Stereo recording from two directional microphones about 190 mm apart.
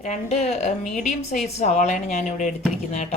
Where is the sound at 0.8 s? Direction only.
Centre (ahead or behind).